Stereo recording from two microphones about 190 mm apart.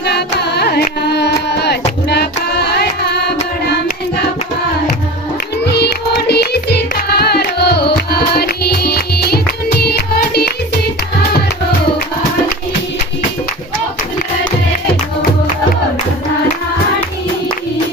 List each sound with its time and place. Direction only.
0.0 s carnatic music: 60° left (ahead or behind)
5.7 s music: 60° left (ahead or behind)